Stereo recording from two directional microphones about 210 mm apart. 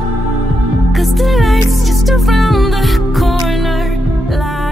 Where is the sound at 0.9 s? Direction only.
Centre (ahead or behind).